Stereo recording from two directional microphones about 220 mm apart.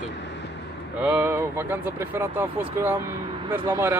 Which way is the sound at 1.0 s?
10° right (ahead or behind).